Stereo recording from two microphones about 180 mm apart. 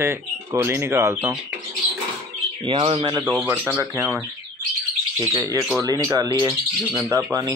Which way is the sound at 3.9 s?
5° right (ahead or behind).